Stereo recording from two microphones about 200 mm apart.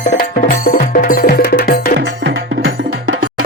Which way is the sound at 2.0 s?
60° right (ahead or behind).